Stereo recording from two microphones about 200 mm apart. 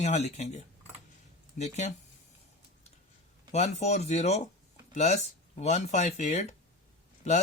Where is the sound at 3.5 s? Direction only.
35° left (ahead or behind).